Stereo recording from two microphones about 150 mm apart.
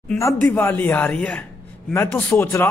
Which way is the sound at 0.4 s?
10° left (ahead or behind).